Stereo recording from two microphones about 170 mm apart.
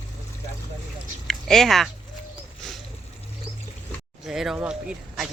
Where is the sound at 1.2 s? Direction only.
Centre (ahead or behind).